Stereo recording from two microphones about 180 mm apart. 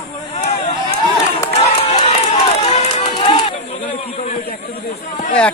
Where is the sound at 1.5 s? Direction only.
40° left (ahead or behind).